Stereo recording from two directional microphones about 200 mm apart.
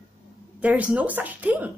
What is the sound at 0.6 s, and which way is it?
A woman's voice, 5° right (ahead or behind).